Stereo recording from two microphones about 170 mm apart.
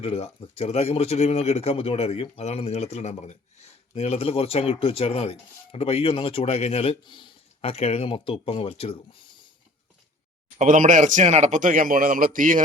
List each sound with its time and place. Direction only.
0.0 s speech: 35° left (ahead or behind)
10.6 s speech: 50° right (ahead or behind)